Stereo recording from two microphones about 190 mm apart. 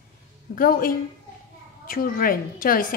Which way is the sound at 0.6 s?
50° left (ahead or behind).